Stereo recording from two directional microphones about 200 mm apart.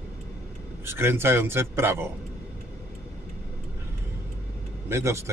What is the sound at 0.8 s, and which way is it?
A man's voice, 10° right (ahead or behind).